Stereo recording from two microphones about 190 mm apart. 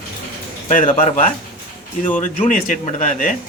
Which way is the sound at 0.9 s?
35° left (ahead or behind).